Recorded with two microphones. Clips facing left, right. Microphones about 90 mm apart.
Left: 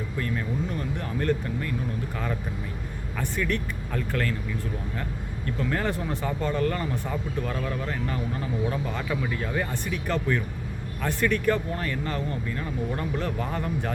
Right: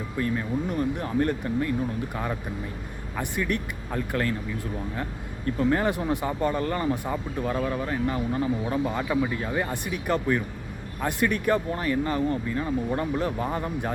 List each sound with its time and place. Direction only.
0.2 s speech: 15° right (ahead or behind)
5.5 s speech: 20° right (ahead or behind)